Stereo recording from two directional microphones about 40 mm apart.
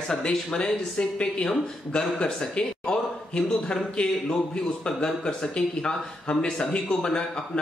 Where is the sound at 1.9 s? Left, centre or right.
Left.